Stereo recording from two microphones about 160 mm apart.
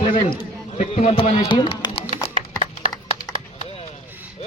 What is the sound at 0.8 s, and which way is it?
A man's voice, 40° left (ahead or behind).